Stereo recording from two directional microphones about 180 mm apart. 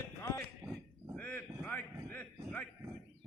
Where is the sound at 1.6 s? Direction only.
10° left (ahead or behind).